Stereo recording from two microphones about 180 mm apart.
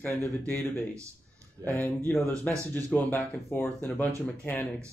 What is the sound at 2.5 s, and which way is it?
Speech, 15° right (ahead or behind).